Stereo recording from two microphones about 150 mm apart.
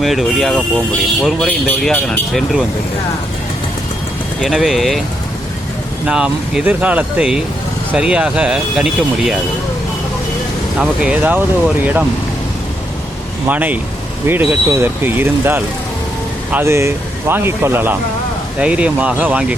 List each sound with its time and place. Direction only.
0.0 s speech: centre (ahead or behind)
4.4 s speech: centre (ahead or behind)
6.1 s speech: 5° right (ahead or behind)
10.8 s speech: 10° right (ahead or behind)
13.5 s speech: 10° right (ahead or behind)